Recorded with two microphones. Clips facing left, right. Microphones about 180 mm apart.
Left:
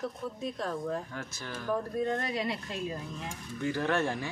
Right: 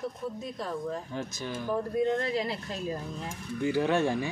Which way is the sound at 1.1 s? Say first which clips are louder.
Right 5 dB; 20° right (ahead or behind).